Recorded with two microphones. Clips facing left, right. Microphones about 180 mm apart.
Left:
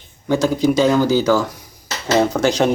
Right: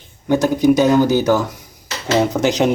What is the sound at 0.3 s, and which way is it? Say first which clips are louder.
Speech: right 3 dB; 15° right (ahead or behind).